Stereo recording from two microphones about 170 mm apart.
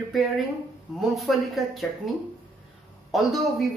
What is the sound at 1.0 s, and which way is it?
Speech, centre (ahead or behind).